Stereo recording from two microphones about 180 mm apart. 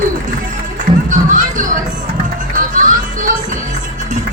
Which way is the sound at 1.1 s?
45° right (ahead or behind).